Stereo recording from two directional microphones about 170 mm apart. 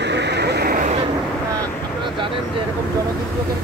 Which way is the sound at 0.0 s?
90° right.